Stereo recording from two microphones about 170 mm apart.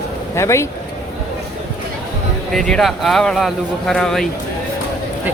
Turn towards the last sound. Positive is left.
turn(degrees=0)  # may be behind; listen again after turning